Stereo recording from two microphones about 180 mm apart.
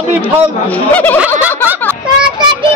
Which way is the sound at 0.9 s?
10° left (ahead or behind).